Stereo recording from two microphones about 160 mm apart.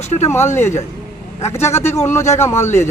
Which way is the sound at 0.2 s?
15° left (ahead or behind).